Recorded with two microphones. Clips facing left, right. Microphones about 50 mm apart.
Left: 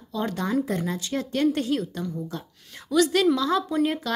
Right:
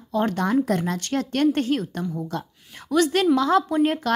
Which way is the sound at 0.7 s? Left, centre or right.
Right.